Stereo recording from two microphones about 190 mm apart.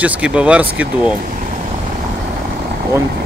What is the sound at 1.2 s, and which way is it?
Speech, 45° right (ahead or behind).